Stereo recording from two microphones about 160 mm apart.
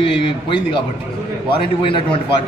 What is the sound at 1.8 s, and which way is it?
Speech, 35° left (ahead or behind).